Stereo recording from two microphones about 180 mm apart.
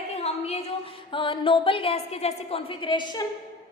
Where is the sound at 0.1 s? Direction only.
35° left (ahead or behind).